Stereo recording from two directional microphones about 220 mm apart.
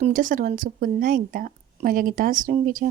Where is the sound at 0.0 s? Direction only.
35° right (ahead or behind).